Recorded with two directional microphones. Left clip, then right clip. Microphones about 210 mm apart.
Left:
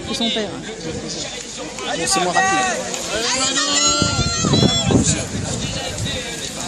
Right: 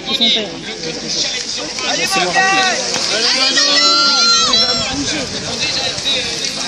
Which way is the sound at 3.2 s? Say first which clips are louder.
Right 6 dB; 60° left (ahead or behind).